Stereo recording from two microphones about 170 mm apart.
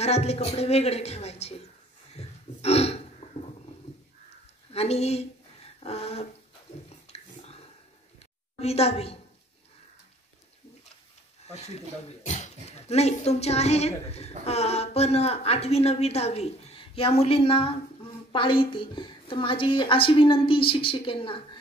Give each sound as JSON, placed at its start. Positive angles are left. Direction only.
{"t": 0.0, "sound": "a woman's voice", "side_deg": 40}
{"t": 2.1, "sound": "a sound", "side_deg": 35}
{"t": 4.7, "sound": "a woman's voice", "side_deg": 40}
{"t": 5.8, "sound": "a sound", "side_deg": 35}
{"t": 8.5, "sound": "a woman's voice", "side_deg": 35}
{"t": 11.4, "sound": "a woman's voice", "side_deg": 40}